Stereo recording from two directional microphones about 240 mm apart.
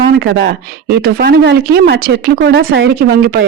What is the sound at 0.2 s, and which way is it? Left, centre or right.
Speech, right.